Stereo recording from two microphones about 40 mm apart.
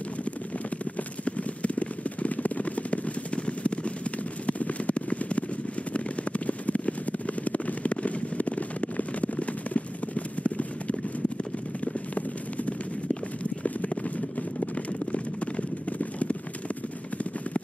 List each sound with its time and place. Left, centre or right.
1.2 s a sound: left
5.9 s fireworks: left
11.8 s clip-clop: left
15.1 s clip-clop: left